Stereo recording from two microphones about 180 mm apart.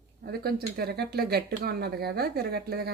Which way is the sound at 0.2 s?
60° right (ahead or behind).